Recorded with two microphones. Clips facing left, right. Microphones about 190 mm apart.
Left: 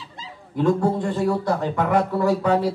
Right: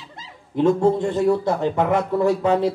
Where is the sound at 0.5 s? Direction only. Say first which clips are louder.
Right 3 dB; 25° right (ahead or behind).